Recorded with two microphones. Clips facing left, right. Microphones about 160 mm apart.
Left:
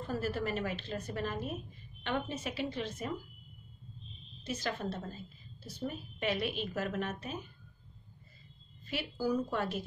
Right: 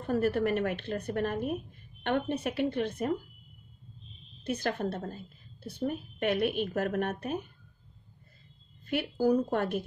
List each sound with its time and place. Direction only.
0.0 s a woman's voice: 60° right (ahead or behind)
4.4 s a woman's voice: 60° right (ahead or behind)
8.8 s a woman's voice: 55° right (ahead or behind)